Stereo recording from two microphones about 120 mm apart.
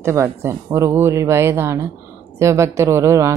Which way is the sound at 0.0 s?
25° right (ahead or behind).